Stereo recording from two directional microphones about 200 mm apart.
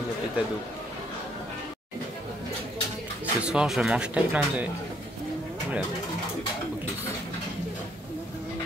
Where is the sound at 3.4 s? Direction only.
5° right (ahead or behind).